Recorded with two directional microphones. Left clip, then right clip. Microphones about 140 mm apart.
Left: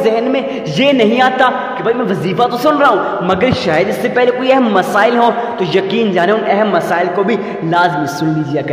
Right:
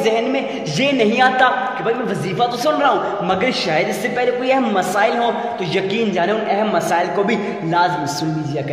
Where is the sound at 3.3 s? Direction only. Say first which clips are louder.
Left 5 dB; 40° left (ahead or behind).